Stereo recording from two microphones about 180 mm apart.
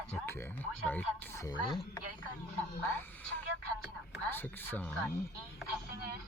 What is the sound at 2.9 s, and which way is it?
Speech, 10° left (ahead or behind).